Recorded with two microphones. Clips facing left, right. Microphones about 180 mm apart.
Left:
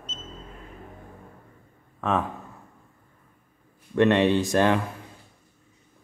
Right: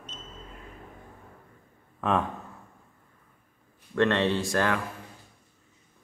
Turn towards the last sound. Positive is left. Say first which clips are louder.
# left 5 dB
turn(degrees=20)  # may be behind; listen again after turning